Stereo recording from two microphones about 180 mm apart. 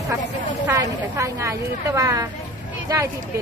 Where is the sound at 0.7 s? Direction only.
20° right (ahead or behind).